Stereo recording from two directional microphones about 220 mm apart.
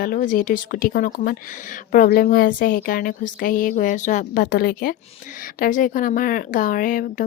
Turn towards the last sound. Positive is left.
turn(degrees=35)  # may be behind; listen again after turning